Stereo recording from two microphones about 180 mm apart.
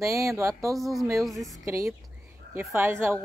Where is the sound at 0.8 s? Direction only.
Centre (ahead or behind).